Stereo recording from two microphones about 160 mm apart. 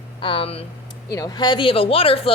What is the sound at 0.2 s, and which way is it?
Speech, 35° left (ahead or behind).